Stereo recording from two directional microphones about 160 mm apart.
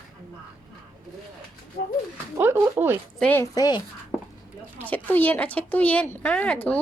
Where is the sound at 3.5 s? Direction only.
25° left (ahead or behind).